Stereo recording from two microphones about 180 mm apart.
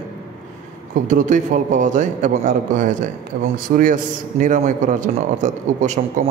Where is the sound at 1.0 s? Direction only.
45° right (ahead or behind).